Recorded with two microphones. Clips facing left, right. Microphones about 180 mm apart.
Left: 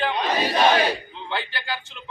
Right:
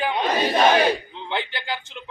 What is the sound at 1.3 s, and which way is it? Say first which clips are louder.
Speech: right 2 dB; 20° right (ahead or behind).